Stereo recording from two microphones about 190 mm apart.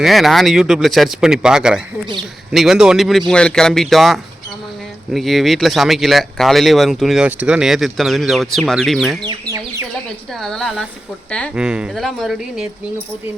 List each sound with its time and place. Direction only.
0.0 s speech: centre (ahead or behind)
9.2 s chicken: 15° right (ahead or behind)
10.4 s speech: centre (ahead or behind)
11.5 s speech: 5° right (ahead or behind)